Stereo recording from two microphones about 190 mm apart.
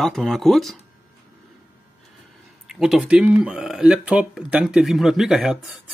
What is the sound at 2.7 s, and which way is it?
Speech, centre (ahead or behind).